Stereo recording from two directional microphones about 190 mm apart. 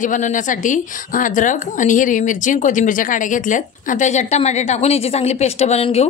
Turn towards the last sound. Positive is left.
turn(degrees=35)  # may be behind; listen again after turning